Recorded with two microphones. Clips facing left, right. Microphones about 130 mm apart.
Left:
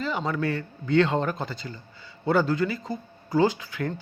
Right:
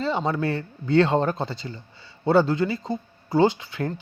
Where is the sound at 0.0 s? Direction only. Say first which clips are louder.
Right 3 dB; 30° right (ahead or behind).